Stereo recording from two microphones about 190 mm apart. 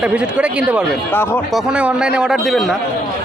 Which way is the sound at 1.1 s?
10° left (ahead or behind).